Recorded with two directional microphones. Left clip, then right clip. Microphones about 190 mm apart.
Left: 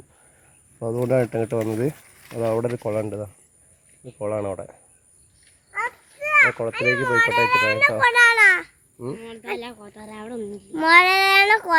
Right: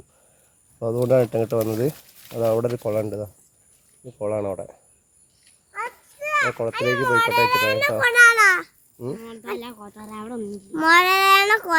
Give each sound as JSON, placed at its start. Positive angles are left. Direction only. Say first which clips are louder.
{"t": 0.8, "sound": "speech", "louder": "right 2 dB", "side_deg": -20}
{"t": 6.1, "sound": "a child's voice", "louder": "left 5 dB", "side_deg": -15}
{"t": 9.0, "sound": "speech", "louder": "right 1 dB", "side_deg": -15}
{"t": 9.2, "sound": "speech", "louder": "left 1 dB", "side_deg": -60}
{"t": 10.8, "sound": "speech", "louder": "left 1 dB", "side_deg": -35}